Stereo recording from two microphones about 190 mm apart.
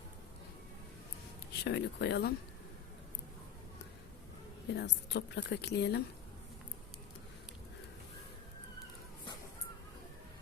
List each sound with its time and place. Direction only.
1.6 s a woman's voice: 65° left (ahead or behind)
4.8 s a woman's voice: 65° left (ahead or behind)